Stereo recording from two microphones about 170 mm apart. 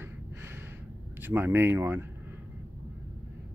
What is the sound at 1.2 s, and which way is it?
Speech, 10° right (ahead or behind).